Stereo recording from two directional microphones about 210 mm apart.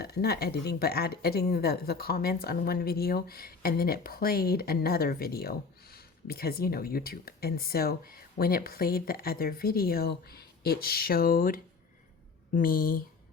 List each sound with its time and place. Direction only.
0.0 s a woman's voice: 50° left (ahead or behind)